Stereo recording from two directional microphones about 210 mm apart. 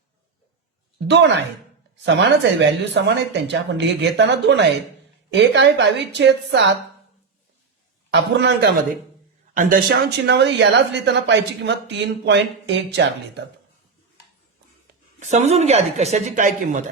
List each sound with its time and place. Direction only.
0.9 s speech: 55° right (ahead or behind)
8.1 s a man's voice: 55° right (ahead or behind)
9.6 s speech: 40° right (ahead or behind)
10.2 s speech: 55° right (ahead or behind)
15.3 s speech: 30° right (ahead or behind)